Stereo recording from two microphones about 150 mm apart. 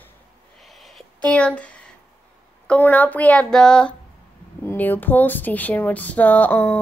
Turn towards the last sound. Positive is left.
turn(degrees=10)  # may be behind; listen again after turning